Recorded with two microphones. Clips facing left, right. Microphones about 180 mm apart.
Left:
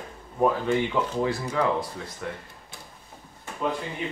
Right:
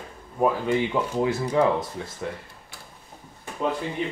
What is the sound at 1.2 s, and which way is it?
Speech, 20° right (ahead or behind).